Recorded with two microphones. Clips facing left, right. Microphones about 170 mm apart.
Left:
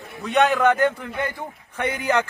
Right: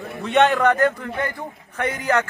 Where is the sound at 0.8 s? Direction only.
10° left (ahead or behind).